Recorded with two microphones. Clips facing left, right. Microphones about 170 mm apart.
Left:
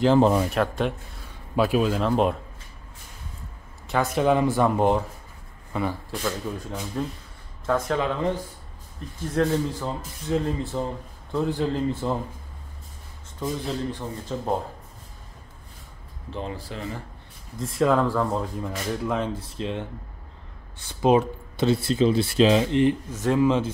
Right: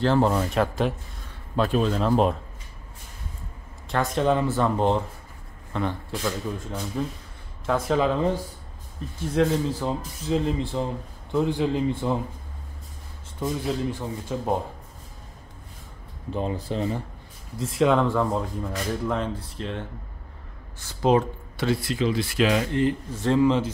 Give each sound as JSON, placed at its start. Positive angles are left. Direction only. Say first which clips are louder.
{"t": 0.0, "sound": "speech", "louder": "left 3 dB", "side_deg": 15}
{"t": 0.5, "sound": "speech", "louder": "right 1 dB", "side_deg": 0}
{"t": 3.9, "sound": "speech", "louder": "left 1 dB", "side_deg": 5}
{"t": 9.3, "sound": "speech", "louder": "right 1 dB", "side_deg": -10}
{"t": 10.4, "sound": "speech", "louder": "right 1 dB", "side_deg": 0}
{"t": 13.4, "sound": "speech", "louder": "right 2 dB", "side_deg": -5}
{"t": 16.4, "sound": "speech", "louder": "right 8 dB", "side_deg": -20}
{"t": 17.6, "sound": "speech", "louder": "right 1 dB", "side_deg": 0}
{"t": 19.2, "sound": "speech", "louder": "left 2 dB", "side_deg": 15}
{"t": 21.0, "sound": "speech", "louder": "left 1 dB", "side_deg": 15}